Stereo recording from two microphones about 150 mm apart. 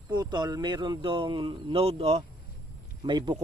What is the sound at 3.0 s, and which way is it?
Speech, 30° right (ahead or behind).